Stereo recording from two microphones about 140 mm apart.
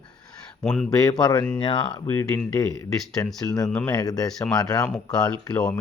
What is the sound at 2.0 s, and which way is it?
Speech, 15° left (ahead or behind).